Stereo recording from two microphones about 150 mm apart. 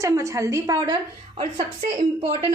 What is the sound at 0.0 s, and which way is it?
Speech, 20° right (ahead or behind).